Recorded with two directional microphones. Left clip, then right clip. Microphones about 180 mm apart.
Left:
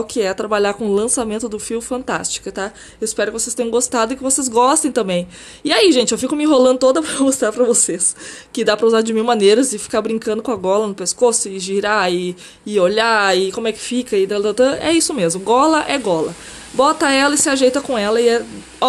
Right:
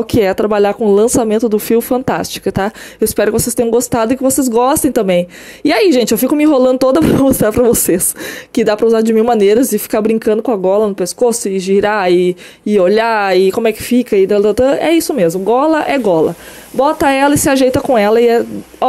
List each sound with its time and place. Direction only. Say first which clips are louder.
0.0 s speech: right 7 dB; 40° right (ahead or behind)
8.5 s speech: right 3 dB; 35° right (ahead or behind)